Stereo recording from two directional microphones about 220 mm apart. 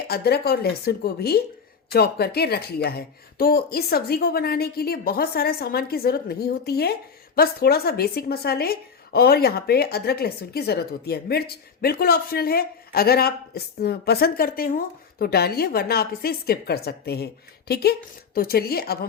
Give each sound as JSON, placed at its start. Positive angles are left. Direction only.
{"t": 0.1, "sound": "a woman's voice", "side_deg": 45}